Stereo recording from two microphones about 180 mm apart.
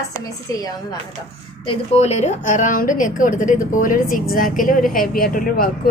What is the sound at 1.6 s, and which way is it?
A woman's voice, 35° left (ahead or behind).